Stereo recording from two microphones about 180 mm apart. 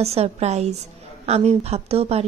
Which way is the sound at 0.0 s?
35° right (ahead or behind).